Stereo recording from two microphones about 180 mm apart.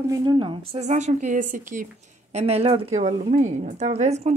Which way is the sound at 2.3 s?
35° right (ahead or behind).